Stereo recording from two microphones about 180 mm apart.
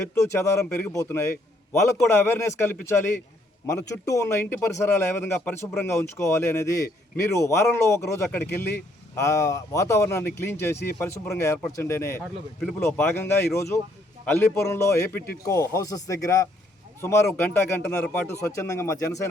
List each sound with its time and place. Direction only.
0.1 s speech: 15° left (ahead or behind)